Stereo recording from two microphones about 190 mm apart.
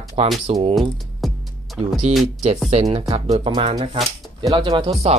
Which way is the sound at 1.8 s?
35° right (ahead or behind).